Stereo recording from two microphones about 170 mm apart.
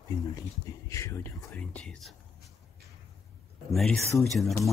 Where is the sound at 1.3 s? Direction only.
Centre (ahead or behind).